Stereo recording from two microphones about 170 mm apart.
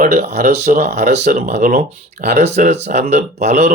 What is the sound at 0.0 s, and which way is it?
Speech, 40° right (ahead or behind).